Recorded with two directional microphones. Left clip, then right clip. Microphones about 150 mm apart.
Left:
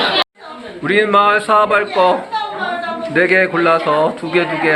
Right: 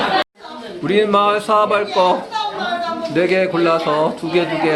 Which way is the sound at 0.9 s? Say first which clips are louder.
Left 3 dB; 15° right (ahead or behind).